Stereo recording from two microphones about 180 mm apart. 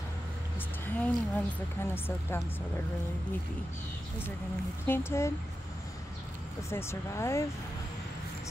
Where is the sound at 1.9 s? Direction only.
15° left (ahead or behind).